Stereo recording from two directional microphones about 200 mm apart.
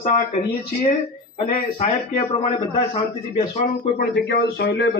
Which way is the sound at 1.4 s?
35° left (ahead or behind).